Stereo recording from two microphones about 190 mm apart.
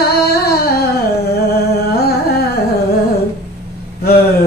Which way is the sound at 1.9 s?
55° left (ahead or behind).